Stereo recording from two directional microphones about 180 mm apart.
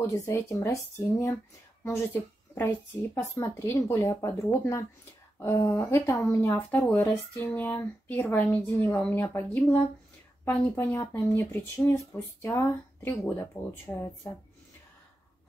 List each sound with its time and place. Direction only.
0.0 s speech: 15° left (ahead or behind)